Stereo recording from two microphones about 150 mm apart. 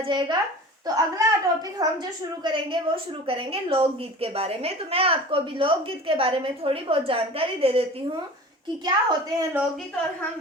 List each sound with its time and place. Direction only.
0.0 s a woman's voice: 30° right (ahead or behind)
8.8 s a child's voice: 30° right (ahead or behind)